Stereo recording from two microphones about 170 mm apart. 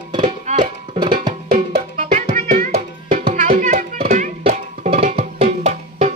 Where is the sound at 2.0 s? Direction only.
45° right (ahead or behind).